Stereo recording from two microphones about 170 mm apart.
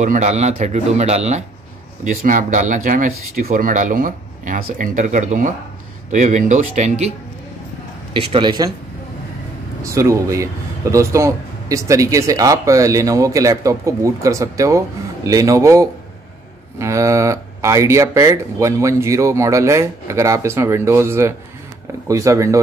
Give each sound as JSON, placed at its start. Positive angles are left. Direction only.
{"t": 0.0, "sound": "speech", "side_deg": -45}
{"t": 2.0, "sound": "speech", "side_deg": -50}
{"t": 8.1, "sound": "speech", "side_deg": -30}
{"t": 9.8, "sound": "speech", "side_deg": -20}